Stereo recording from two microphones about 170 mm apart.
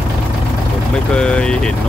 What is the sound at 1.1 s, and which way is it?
Speech, 5° left (ahead or behind).